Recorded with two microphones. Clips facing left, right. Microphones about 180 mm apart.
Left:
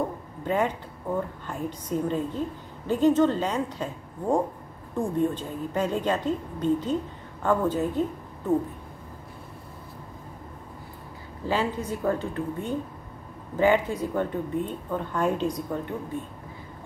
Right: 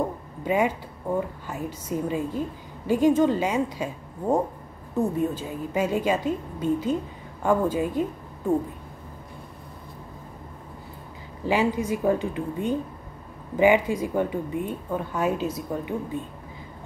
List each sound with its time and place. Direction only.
0.4 s a woman's voice: 10° right (ahead or behind)
11.4 s a woman's voice: 10° right (ahead or behind)